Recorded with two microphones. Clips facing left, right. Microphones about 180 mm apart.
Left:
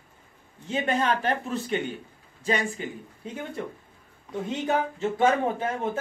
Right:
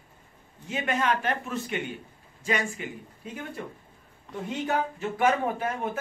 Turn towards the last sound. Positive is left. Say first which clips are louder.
# left 2 dB
turn(degrees=25)  # may be behind; listen again after turning